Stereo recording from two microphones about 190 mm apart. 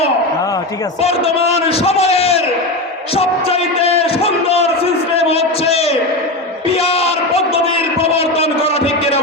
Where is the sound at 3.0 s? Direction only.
30° left (ahead or behind).